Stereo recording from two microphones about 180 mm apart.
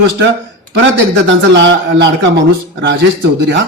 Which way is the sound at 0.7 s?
80° right.